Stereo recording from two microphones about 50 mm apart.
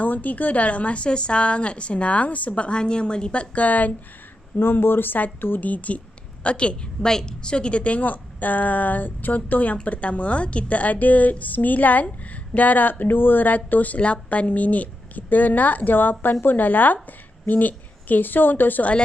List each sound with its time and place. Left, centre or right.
0.0 s a woman's voice: left
4.6 s a woman's voice: left